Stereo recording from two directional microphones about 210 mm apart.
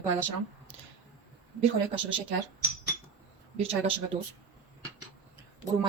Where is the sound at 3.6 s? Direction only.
25° right (ahead or behind).